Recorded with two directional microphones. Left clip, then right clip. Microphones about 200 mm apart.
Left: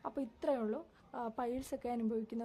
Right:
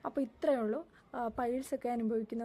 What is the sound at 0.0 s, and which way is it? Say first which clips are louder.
A woman's voice: right 5 dB; 15° right (ahead or behind).